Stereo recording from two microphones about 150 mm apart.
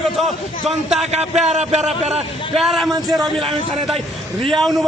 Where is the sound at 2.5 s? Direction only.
Centre (ahead or behind).